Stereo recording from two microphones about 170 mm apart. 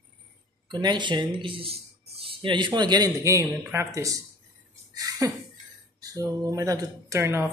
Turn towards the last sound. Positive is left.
turn(degrees=-15)  # may be behind; listen again after turning